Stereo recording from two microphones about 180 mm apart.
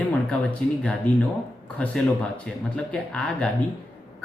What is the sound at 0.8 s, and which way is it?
Speech, 5° left (ahead or behind).